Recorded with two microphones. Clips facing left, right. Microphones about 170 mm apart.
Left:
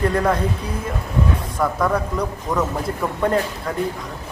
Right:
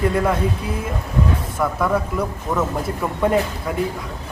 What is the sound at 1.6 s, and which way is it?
Speech, 5° right (ahead or behind).